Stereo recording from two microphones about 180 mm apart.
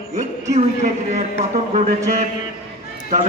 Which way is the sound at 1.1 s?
40° right (ahead or behind).